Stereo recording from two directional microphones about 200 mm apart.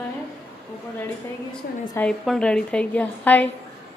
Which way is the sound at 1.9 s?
10° left (ahead or behind).